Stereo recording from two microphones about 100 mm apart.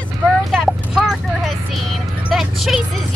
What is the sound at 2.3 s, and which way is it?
Music, centre (ahead or behind).